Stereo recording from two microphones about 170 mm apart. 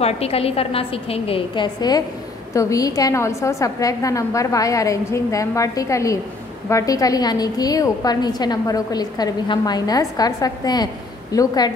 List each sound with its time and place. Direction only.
0.0 s a woman's voice: 35° left (ahead or behind)